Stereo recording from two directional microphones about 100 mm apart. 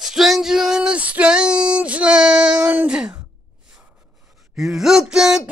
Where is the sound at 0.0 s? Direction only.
Centre (ahead or behind).